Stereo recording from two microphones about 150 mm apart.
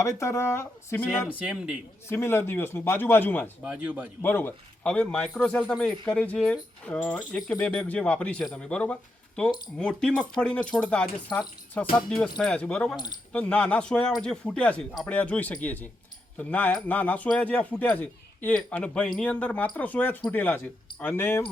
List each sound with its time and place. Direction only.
0.0 s speech: 20° left (ahead or behind)
1.5 s speech: 5° right (ahead or behind)
2.0 s a man's voice: 15° left (ahead or behind)
3.6 s speech: 10° right (ahead or behind)
4.2 s a man's voice: 15° left (ahead or behind)